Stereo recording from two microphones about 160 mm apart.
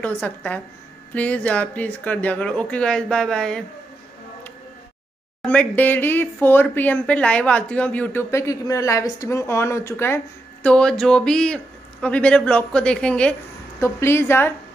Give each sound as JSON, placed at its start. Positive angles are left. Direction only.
{"t": 0.0, "sound": "speech", "side_deg": 10}
{"t": 5.4, "sound": "speech", "side_deg": 10}
{"t": 13.7, "sound": "speech", "side_deg": 15}